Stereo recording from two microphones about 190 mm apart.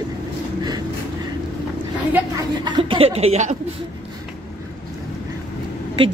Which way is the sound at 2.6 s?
25° right (ahead or behind).